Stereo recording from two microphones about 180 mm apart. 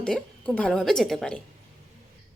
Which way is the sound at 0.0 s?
5° left (ahead or behind).